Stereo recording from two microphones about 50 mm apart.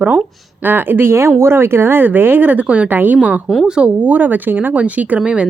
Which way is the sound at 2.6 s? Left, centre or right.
Right.